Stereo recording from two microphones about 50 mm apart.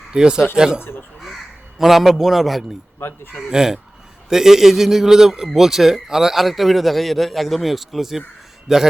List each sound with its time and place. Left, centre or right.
0.1 s speech: centre
0.8 s speech: left
1.8 s a man's voice: centre
3.0 s speech: left
3.5 s a man's voice: centre